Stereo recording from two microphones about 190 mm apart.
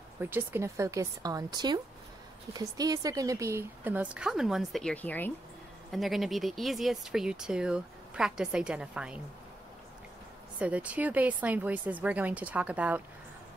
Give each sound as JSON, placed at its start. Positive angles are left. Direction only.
{"t": 0.2, "sound": "a woman's voice", "side_deg": -10}
{"t": 10.6, "sound": "a woman's voice", "side_deg": -5}